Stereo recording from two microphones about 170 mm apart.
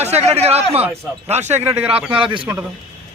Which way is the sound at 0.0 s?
40° right (ahead or behind).